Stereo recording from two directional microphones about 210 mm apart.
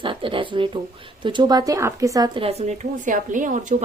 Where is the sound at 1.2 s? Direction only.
20° right (ahead or behind).